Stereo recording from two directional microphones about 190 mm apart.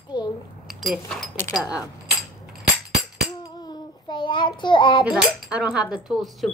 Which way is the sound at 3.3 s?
20° left (ahead or behind).